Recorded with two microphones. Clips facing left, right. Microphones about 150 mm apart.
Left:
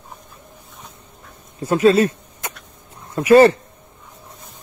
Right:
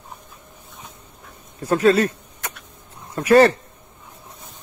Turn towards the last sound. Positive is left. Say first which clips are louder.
# left 3 dB
turn(degrees=20)  # may be behind; listen again after turning